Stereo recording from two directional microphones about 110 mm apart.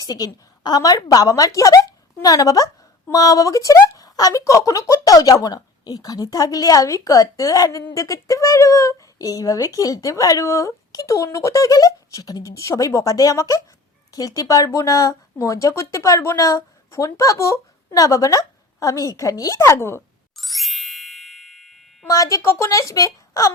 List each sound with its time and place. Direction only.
0.0 s speech: 35° left (ahead or behind)
20.3 s ding: centre (ahead or behind)
22.0 s speech: 30° left (ahead or behind)